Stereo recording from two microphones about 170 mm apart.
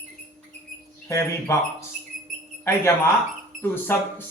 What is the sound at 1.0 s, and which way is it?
Speech, 15° left (ahead or behind).